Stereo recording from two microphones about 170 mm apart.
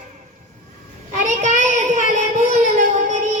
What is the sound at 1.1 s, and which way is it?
Child singing, 50° right (ahead or behind).